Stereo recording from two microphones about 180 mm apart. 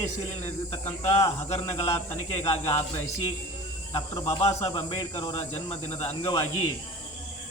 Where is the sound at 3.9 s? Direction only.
20° left (ahead or behind).